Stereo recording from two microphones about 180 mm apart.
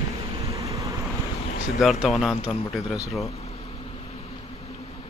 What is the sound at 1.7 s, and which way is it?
Speech, centre (ahead or behind).